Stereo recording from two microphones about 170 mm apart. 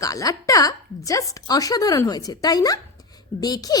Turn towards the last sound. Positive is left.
turn(degrees=20)  # may be behind; listen again after turning